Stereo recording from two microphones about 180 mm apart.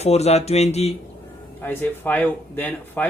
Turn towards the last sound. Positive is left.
turn(degrees=10)  # may be behind; listen again after turning